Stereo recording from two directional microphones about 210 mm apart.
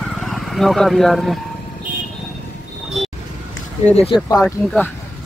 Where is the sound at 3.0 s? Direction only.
Centre (ahead or behind).